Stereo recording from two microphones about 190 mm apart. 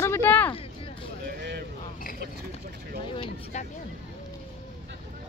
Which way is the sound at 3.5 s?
35° left (ahead or behind).